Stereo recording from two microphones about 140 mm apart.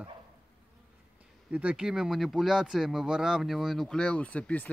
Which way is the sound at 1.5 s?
10° right (ahead or behind).